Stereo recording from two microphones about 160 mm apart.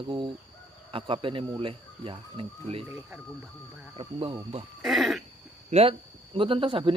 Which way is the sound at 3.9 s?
35° right (ahead or behind).